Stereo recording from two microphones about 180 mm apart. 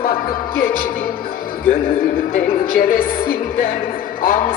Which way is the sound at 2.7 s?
50° left (ahead or behind).